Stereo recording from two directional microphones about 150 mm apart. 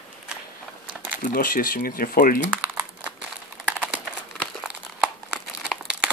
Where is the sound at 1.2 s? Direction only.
70° left (ahead or behind).